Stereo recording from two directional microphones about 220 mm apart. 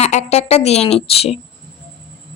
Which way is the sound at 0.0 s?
30° left (ahead or behind).